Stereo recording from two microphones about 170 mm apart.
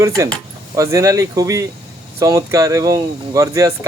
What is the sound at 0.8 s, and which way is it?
Speech, 20° right (ahead or behind).